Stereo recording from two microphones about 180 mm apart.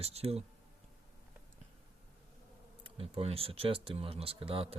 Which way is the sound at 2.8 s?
30° right (ahead or behind).